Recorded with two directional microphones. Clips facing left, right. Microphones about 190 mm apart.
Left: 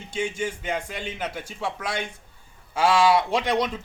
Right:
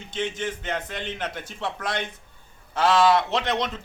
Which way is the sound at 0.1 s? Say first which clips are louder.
Left 1 dB; 10° left (ahead or behind).